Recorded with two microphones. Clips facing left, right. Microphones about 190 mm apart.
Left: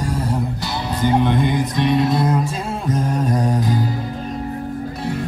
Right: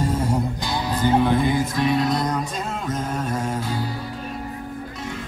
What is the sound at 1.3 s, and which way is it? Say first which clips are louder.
Music: left 1 dB; 5° right (ahead or behind).